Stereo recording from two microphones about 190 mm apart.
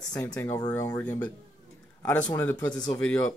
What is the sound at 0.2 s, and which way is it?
Speech, 10° left (ahead or behind).